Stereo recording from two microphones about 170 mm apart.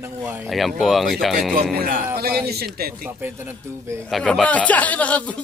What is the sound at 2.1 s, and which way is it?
Speech, 65° right (ahead or behind).